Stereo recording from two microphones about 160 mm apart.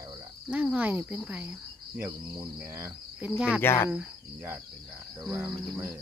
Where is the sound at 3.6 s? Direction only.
15° left (ahead or behind).